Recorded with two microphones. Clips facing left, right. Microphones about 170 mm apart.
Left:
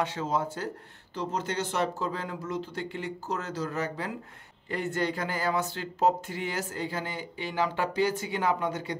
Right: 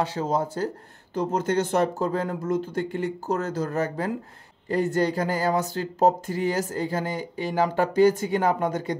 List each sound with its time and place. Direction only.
0.0 s speech: 35° right (ahead or behind)